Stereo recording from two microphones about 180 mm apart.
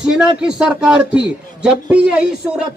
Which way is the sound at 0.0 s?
5° right (ahead or behind).